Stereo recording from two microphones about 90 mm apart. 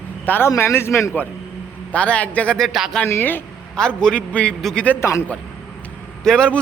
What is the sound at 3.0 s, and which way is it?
Speech, 25° left (ahead or behind).